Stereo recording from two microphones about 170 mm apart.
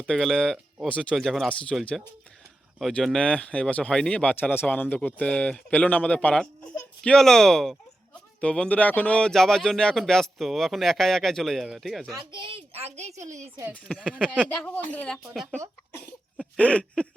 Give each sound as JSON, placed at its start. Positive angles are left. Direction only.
{"t": 0.0, "sound": "speech", "side_deg": 5}
{"t": 12.1, "sound": "a woman's voice", "side_deg": -30}
{"t": 13.8, "sound": "speech", "side_deg": 5}